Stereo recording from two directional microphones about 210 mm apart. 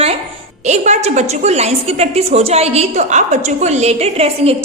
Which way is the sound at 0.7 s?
35° right (ahead or behind).